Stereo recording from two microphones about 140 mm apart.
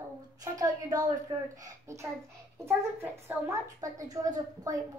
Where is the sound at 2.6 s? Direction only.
20° right (ahead or behind).